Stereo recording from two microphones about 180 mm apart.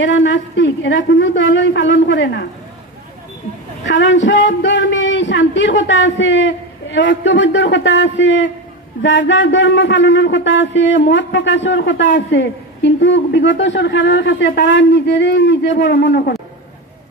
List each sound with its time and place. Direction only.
0.0 s a woman's voice: 85° left
3.8 s a woman's voice: 90° left; by 16.3 s 65° left (ahead or behind)